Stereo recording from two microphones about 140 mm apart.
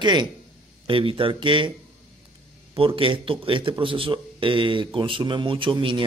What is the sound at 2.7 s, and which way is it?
Speech, 40° right (ahead or behind).